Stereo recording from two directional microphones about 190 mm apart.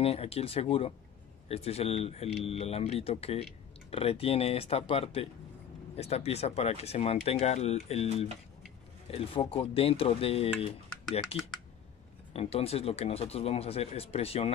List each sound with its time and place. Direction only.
0.0 s speech: 30° left (ahead or behind)